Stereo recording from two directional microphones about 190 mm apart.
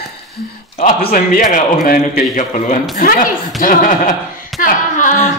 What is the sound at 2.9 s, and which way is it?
Speech, 45° left (ahead or behind).